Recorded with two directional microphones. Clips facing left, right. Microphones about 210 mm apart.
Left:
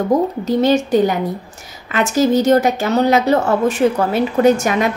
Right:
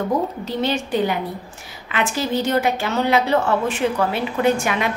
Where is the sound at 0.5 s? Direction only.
45° left (ahead or behind).